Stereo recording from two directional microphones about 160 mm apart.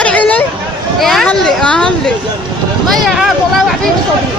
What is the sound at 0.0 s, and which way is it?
Hubbub, 10° left (ahead or behind).